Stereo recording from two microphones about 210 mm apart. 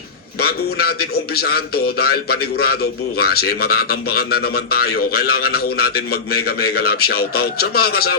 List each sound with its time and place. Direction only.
0.3 s a man's voice: 45° left (ahead or behind)